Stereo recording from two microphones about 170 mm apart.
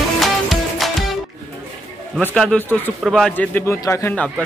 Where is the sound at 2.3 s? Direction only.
5° left (ahead or behind).